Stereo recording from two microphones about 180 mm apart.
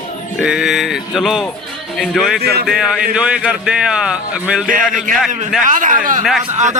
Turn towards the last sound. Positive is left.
turn(degrees=-40)  # may be behind; listen again after turning